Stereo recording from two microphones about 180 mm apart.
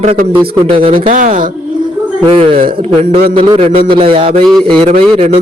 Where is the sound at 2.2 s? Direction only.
30° right (ahead or behind).